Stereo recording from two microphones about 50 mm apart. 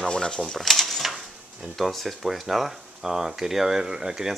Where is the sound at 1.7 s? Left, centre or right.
Centre.